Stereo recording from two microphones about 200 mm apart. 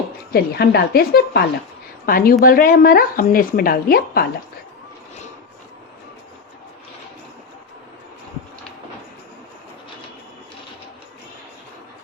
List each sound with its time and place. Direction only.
0.3 s speech: 55° left (ahead or behind)